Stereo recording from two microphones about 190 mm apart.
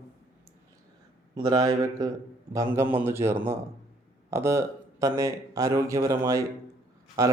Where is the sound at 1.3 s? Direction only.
20° right (ahead or behind).